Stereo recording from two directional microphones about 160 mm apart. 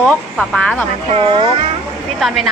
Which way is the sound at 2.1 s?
Centre (ahead or behind).